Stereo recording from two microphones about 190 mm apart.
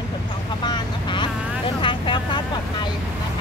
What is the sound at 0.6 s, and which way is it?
Speech, 25° left (ahead or behind).